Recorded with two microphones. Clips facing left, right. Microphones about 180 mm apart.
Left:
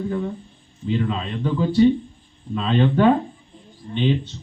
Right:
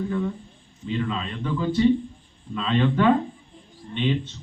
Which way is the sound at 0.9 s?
35° left (ahead or behind).